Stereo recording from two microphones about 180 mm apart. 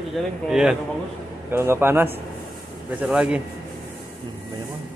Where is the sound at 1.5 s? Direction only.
15° right (ahead or behind).